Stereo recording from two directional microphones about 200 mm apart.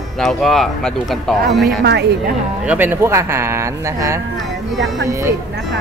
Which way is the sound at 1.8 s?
55° right (ahead or behind).